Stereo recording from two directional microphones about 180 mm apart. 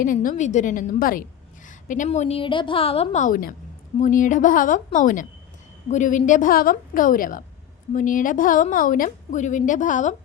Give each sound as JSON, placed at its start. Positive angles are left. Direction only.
{"t": 0.0, "sound": "a woman's voice", "side_deg": 50}